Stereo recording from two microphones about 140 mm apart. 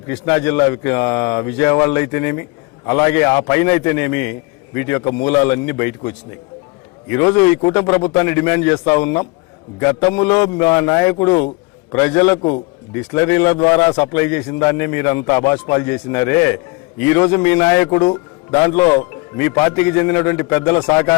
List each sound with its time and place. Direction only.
0.1 s speech: 15° left (ahead or behind)